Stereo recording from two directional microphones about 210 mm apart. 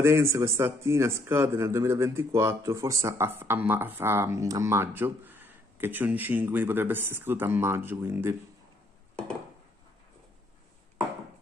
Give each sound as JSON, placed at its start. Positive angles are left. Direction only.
{"t": 0.0, "sound": "speech", "side_deg": -10}